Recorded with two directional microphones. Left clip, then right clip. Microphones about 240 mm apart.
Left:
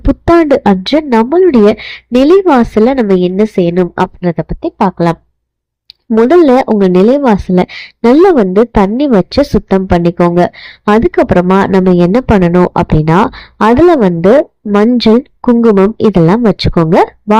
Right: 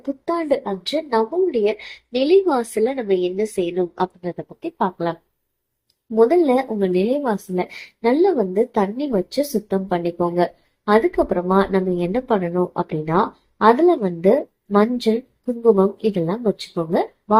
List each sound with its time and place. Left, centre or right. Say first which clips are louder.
0.3 s speech: left 14 dB; left
6.2 s speech: left 11 dB; left